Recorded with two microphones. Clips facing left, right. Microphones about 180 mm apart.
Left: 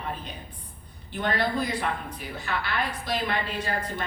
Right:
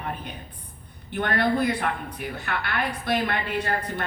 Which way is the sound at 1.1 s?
60° right (ahead or behind).